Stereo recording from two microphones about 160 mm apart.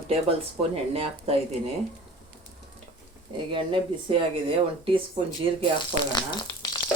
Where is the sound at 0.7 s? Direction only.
40° right (ahead or behind).